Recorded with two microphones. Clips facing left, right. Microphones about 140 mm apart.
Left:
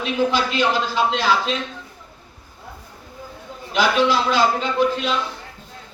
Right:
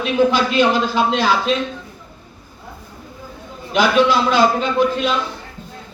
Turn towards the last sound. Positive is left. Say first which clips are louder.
# right 3 dB
turn(degrees=-55)  # may be behind; listen again after turning